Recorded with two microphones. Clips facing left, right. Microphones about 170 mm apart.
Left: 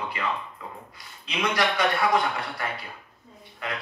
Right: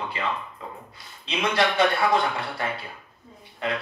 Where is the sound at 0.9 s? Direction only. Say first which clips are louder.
Right 2 dB; 25° right (ahead or behind).